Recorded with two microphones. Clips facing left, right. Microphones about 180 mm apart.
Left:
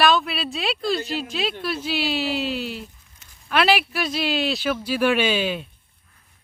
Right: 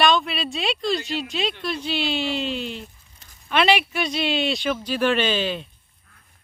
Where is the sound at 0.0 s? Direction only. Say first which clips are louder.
Even; 5° left (ahead or behind).